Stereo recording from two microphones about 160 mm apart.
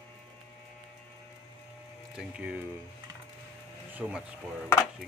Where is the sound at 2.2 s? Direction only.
5° right (ahead or behind).